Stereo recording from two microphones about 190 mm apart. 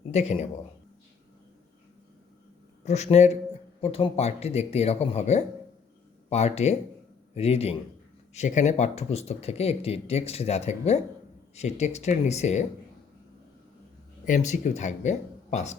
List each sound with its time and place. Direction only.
0.1 s speech: 35° left (ahead or behind)
2.8 s speech: 35° left (ahead or behind)
14.3 s speech: 40° left (ahead or behind)